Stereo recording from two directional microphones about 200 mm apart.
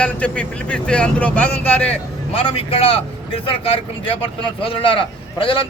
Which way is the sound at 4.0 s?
25° left (ahead or behind).